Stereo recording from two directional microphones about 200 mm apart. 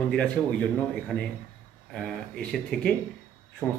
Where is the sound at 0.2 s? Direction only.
5° left (ahead or behind).